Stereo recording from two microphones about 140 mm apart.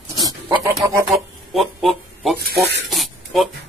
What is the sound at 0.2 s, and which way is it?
Pig, 25° right (ahead or behind).